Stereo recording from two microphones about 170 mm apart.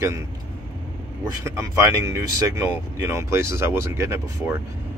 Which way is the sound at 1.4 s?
15° right (ahead or behind).